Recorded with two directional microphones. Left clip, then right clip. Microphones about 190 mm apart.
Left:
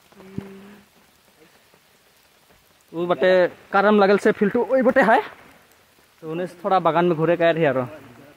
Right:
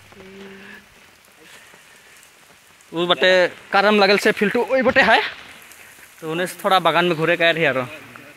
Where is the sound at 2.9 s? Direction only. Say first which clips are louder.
Right 2 dB; 5° left (ahead or behind).